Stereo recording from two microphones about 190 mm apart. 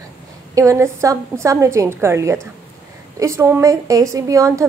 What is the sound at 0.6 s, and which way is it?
A woman's voice, 15° right (ahead or behind).